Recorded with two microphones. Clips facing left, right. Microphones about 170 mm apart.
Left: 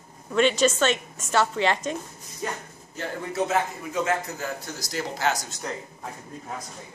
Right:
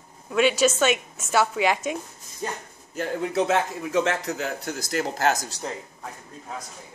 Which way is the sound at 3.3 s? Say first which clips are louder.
Right 2 dB; 85° right.